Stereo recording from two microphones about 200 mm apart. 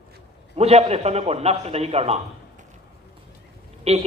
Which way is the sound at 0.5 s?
30° right (ahead or behind).